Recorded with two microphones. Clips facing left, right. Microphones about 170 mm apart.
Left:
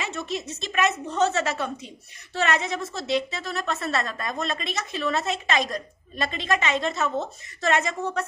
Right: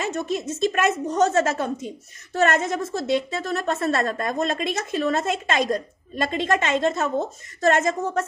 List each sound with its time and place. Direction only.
0.0 s a woman's voice: 50° right (ahead or behind)
6.6 s a woman's voice: 45° right (ahead or behind)